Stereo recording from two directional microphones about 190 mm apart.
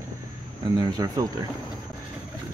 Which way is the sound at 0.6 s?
20° right (ahead or behind).